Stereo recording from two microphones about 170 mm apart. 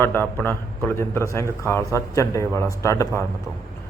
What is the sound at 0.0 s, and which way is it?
A man's voice, 10° left (ahead or behind).